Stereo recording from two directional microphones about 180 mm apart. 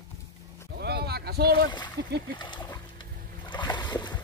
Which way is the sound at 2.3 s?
25° left (ahead or behind).